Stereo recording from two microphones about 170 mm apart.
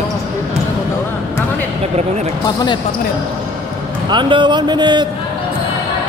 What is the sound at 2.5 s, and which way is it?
Speech, 25° left (ahead or behind).